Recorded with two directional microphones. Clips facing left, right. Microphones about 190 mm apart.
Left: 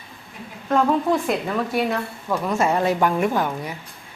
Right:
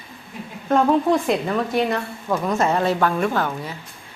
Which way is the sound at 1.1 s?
Centre (ahead or behind).